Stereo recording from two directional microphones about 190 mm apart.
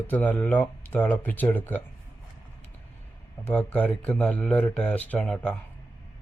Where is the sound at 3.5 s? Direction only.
5° left (ahead or behind).